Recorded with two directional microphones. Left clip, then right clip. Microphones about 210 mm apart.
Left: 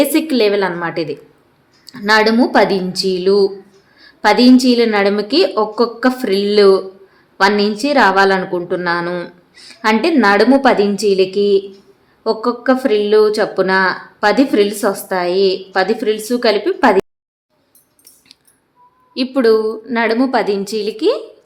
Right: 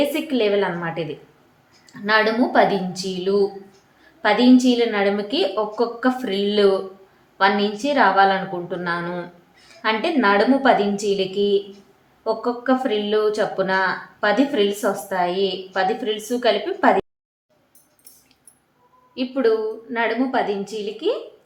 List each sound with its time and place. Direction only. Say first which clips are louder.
0.1 s a woman's voice: left 6 dB; 55° left (ahead or behind)
19.1 s speech: left 7 dB; 55° left (ahead or behind)